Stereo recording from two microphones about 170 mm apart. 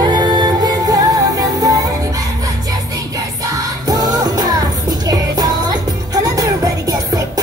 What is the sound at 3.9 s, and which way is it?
Music, 20° right (ahead or behind).